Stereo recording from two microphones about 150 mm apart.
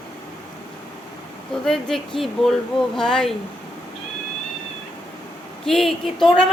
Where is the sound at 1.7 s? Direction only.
5° left (ahead or behind).